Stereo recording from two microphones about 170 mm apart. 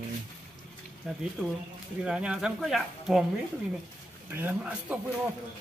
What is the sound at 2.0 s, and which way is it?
Speech, 5° right (ahead or behind).